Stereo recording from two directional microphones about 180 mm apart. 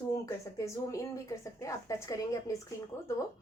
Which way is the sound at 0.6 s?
15° left (ahead or behind).